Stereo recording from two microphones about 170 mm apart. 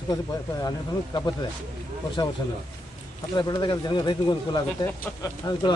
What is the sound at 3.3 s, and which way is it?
Speech, 25° left (ahead or behind).